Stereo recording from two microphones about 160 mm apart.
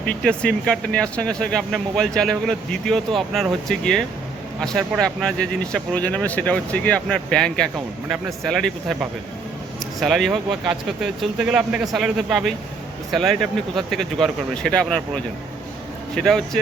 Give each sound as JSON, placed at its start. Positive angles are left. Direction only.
{"t": 0.2, "sound": "speech", "side_deg": 5}